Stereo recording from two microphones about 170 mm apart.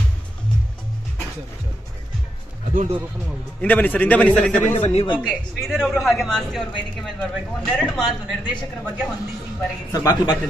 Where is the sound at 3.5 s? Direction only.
10° left (ahead or behind).